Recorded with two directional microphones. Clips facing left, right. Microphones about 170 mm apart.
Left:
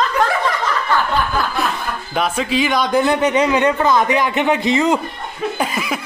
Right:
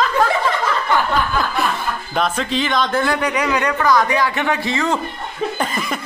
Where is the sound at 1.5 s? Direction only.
Centre (ahead or behind); by 5.0 s 20° left (ahead or behind).